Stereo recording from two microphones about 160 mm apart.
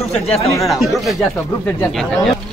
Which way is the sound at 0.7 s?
Centre (ahead or behind).